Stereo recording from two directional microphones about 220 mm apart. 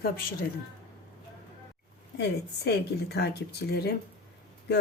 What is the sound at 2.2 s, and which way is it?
A woman's voice, 50° left (ahead or behind).